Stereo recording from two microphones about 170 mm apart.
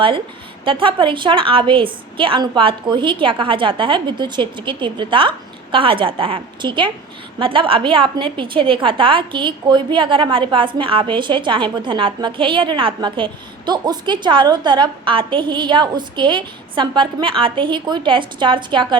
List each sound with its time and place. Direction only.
0.6 s a woman's voice: 30° right (ahead or behind)